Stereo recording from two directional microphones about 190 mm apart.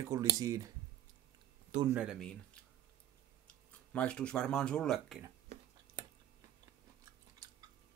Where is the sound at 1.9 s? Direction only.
5° right (ahead or behind).